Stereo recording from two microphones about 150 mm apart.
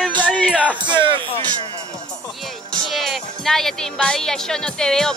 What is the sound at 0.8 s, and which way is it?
Speech, 30° right (ahead or behind).